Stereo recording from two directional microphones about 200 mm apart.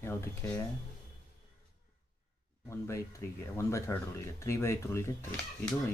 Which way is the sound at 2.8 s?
10° left (ahead or behind).